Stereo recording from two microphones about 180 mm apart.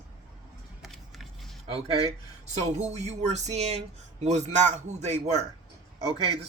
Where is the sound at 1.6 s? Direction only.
35° right (ahead or behind).